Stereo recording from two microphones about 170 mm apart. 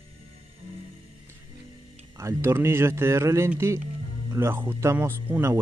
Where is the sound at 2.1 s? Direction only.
15° right (ahead or behind).